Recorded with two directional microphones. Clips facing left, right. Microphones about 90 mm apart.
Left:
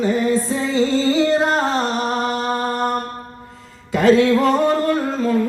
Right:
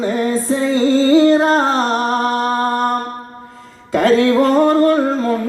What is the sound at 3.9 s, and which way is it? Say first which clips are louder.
Music: right 1 dB; 45° right (ahead or behind).